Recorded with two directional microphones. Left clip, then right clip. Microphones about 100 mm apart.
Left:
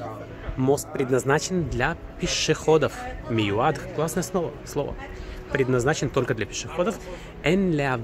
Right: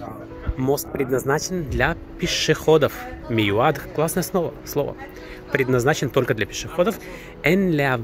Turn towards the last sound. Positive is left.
turn(degrees=-20)  # may be behind; listen again after turning